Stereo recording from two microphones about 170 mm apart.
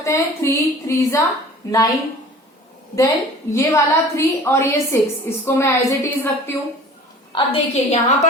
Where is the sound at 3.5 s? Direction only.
15° left (ahead or behind).